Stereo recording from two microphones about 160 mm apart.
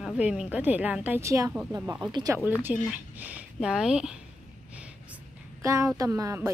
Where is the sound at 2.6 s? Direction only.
10° right (ahead or behind).